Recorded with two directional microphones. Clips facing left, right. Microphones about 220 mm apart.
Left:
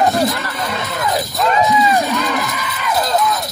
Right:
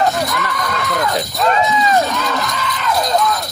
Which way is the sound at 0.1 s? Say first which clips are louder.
Left 3 dB; 30° left (ahead or behind).